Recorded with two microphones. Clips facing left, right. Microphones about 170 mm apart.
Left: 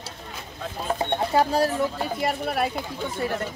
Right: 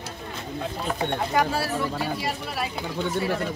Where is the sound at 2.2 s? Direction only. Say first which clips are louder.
Left 5 dB; 55° left (ahead or behind).